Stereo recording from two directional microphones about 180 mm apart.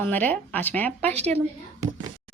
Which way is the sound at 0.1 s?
5° left (ahead or behind).